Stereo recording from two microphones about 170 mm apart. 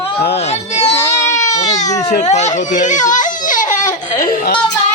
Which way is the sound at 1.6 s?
45° left (ahead or behind).